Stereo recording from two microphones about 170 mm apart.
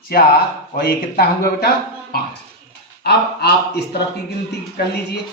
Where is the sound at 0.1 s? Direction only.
60° left (ahead or behind).